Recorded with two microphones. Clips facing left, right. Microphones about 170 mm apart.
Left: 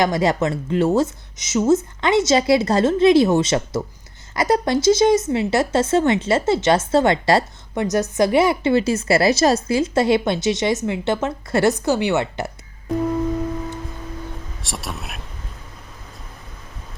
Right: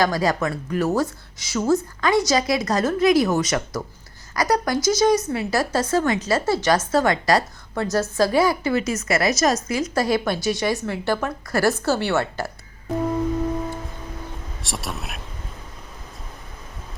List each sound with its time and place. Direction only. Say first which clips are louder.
0.0 s speech: left 2 dB; 25° left (ahead or behind)
14.6 s speech: right 1 dB; centre (ahead or behind)